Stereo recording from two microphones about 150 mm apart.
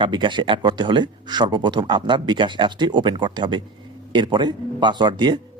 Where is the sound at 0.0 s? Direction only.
30° right (ahead or behind).